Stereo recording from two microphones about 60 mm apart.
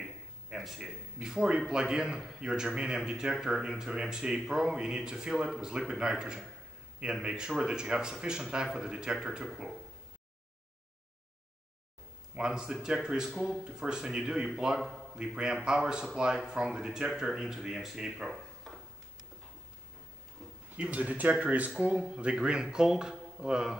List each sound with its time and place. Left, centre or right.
0.0 s a sound: centre
1.2 s a man's voice: centre
12.4 s a man's voice: centre
14.8 s a man's voice: centre
15.3 s a man's voice: centre
18.3 s a sound: centre
20.7 s a man's voice: right